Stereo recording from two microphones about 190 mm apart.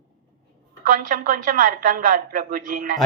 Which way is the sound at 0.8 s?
45° right (ahead or behind).